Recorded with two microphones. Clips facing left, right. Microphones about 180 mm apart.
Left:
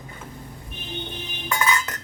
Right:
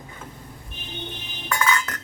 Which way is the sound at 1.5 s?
20° left (ahead or behind).